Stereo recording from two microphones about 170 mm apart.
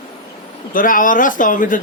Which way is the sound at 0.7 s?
50° left (ahead or behind).